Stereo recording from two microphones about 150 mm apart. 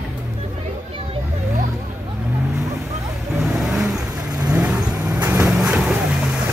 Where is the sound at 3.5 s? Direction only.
Centre (ahead or behind).